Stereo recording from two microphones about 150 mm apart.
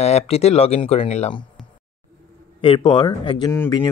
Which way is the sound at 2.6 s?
35° left (ahead or behind).